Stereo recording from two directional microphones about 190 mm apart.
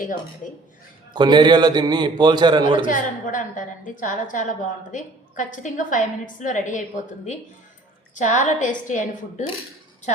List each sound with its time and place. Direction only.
1.1 s a man's voice: 20° right (ahead or behind)
2.8 s a woman's voice: 45° left (ahead or behind)